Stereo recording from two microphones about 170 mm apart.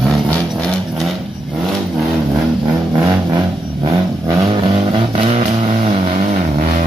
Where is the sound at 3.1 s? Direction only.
25° right (ahead or behind).